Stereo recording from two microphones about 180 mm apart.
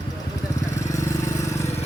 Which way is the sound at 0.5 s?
15° left (ahead or behind).